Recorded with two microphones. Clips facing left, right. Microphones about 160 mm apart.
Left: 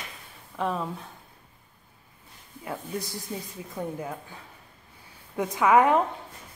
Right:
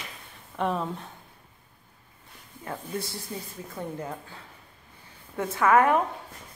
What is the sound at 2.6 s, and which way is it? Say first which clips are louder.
Speech: even; 15° left (ahead or behind).